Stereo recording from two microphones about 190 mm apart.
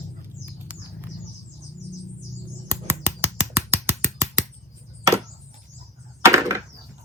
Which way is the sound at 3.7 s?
15° right (ahead or behind).